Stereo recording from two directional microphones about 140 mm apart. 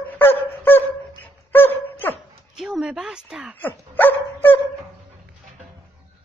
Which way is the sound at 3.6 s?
15° left (ahead or behind).